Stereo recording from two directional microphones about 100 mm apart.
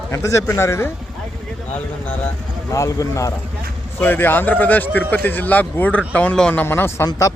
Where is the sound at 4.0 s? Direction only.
20° left (ahead or behind).